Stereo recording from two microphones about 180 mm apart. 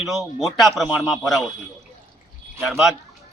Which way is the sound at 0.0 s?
Centre (ahead or behind).